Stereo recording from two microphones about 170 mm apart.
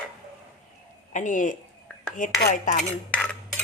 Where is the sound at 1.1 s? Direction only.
50° left (ahead or behind).